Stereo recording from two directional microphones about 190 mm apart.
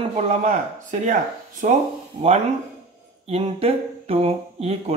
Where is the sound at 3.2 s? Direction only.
35° right (ahead or behind).